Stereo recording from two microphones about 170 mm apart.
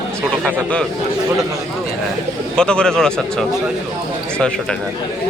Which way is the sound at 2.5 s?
5° left (ahead or behind).